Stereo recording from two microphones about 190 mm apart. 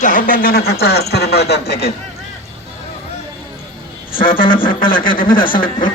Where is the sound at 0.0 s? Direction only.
45° left (ahead or behind); by 1.9 s 60° left (ahead or behind).